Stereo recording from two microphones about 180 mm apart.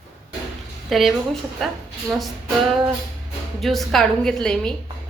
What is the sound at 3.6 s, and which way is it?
A woman's voice, centre (ahead or behind).